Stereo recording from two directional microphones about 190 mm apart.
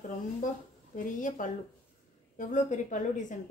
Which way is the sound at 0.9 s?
45° left (ahead or behind).